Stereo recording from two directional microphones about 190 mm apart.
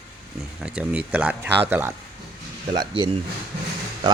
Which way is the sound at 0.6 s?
5° right (ahead or behind).